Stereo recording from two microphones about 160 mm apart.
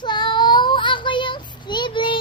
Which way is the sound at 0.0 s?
30° left (ahead or behind).